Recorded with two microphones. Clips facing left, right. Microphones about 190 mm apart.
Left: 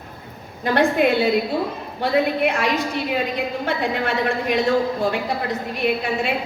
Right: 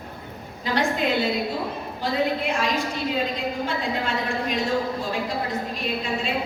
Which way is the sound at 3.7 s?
65° left (ahead or behind).